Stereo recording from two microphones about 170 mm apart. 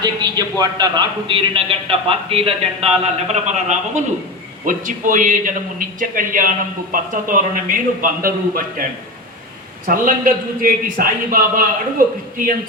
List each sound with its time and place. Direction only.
0.0 s a man's voice: 25° right (ahead or behind); by 12.5 s 55° right (ahead or behind)